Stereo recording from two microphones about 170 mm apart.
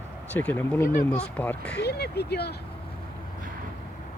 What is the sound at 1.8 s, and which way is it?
Speech, 70° left (ahead or behind).